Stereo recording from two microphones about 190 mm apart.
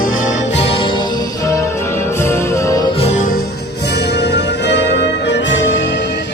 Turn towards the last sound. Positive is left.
turn(degrees=75)  # may be behind; listen again after turning